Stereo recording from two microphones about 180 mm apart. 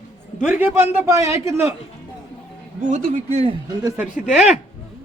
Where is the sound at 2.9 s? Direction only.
40° right (ahead or behind).